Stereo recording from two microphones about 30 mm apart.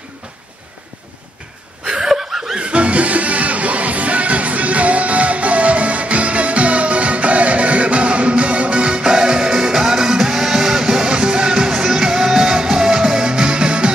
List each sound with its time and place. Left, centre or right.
2.0 s chuckle: centre
2.6 s music: right; by 13.2 s centre
13.2 s music: right